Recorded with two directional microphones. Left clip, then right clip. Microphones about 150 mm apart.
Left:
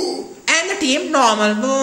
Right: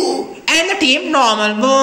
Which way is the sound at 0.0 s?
20° left (ahead or behind).